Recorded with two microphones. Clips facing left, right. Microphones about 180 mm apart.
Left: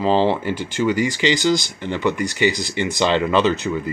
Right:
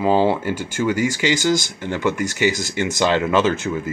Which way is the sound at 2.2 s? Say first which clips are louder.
Even; 45° right (ahead or behind).